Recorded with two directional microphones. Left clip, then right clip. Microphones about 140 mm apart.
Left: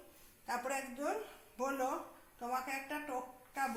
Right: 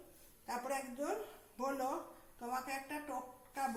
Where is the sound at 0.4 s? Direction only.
5° right (ahead or behind).